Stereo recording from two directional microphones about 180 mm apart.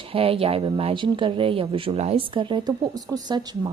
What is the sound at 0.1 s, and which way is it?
Speech, 30° right (ahead or behind).